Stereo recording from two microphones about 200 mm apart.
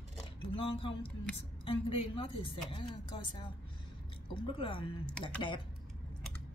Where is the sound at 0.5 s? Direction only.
25° left (ahead or behind).